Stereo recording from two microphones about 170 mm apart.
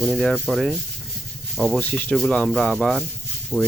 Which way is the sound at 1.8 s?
10° left (ahead or behind).